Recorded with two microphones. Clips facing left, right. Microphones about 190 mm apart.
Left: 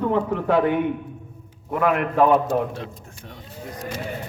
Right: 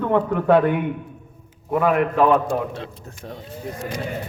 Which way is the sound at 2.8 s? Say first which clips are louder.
Right 1 dB; 35° right (ahead or behind).